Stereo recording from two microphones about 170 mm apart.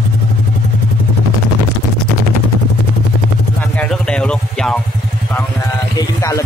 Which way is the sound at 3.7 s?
5° left (ahead or behind).